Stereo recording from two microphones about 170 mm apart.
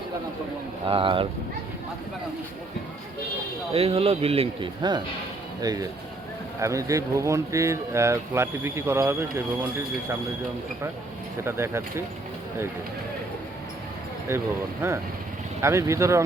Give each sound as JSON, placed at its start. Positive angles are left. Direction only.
{"t": 0.9, "sound": "a man's voice", "side_deg": -30}
{"t": 3.7, "sound": "a man's voice", "side_deg": -35}
{"t": 11.4, "sound": "speech", "side_deg": -15}
{"t": 14.3, "sound": "speech", "side_deg": -15}